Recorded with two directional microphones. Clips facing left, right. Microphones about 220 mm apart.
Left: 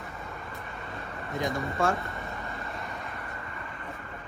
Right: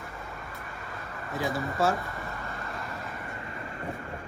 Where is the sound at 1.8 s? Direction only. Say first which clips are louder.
Right 1 dB; 5° right (ahead or behind).